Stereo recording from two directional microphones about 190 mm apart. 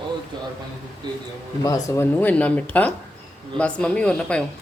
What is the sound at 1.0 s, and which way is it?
Speech, 25° right (ahead or behind).